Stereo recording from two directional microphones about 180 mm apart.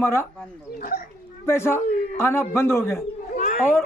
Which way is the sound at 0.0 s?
15° left (ahead or behind).